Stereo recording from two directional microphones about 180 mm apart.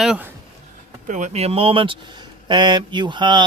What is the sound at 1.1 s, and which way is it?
Speech, 45° right (ahead or behind).